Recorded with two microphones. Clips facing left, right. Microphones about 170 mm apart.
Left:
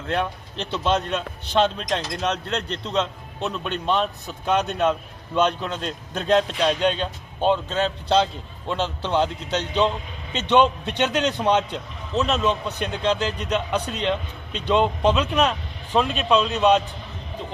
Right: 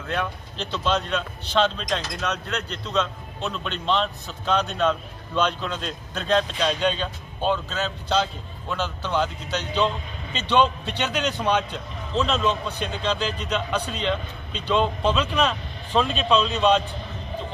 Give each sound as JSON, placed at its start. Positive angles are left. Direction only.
{"t": 0.7, "sound": "a man's voice", "side_deg": 15}